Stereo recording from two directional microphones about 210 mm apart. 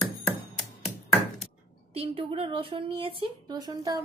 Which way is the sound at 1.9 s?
25° right (ahead or behind).